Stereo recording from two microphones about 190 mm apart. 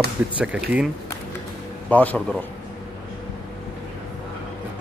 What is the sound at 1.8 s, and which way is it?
Speech, 10° left (ahead or behind).